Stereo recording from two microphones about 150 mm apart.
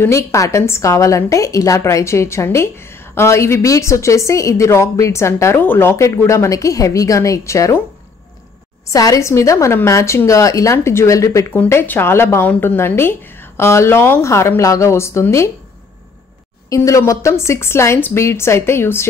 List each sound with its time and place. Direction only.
0.0 s a woman's voice: 20° left (ahead or behind)
8.9 s a woman's voice: 20° left (ahead or behind)
16.6 s a woman's voice: 20° left (ahead or behind)